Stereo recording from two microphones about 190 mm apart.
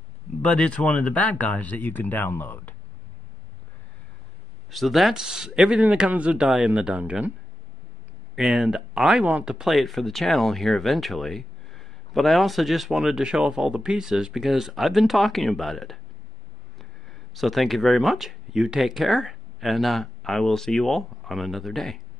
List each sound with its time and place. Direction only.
0.4 s speech: 5° left (ahead or behind)
4.6 s speech: centre (ahead or behind)
8.4 s speech: centre (ahead or behind)
17.3 s speech: centre (ahead or behind)